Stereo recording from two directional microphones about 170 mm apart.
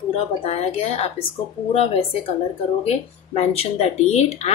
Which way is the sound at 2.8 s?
35° left (ahead or behind).